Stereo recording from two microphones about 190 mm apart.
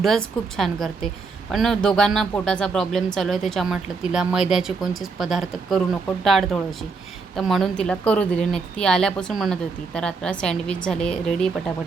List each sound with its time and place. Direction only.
0.0 s a woman's voice: centre (ahead or behind)